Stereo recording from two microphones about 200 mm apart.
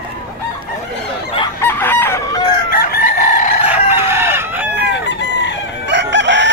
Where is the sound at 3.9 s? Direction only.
10° right (ahead or behind).